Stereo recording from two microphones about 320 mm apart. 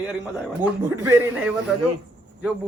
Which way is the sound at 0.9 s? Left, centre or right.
Centre.